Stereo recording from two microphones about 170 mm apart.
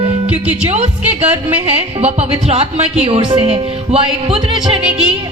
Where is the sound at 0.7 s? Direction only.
35° right (ahead or behind).